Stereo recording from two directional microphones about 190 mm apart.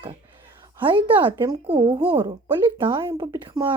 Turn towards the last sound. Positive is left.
turn(degrees=-25)  # may be behind; listen again after turning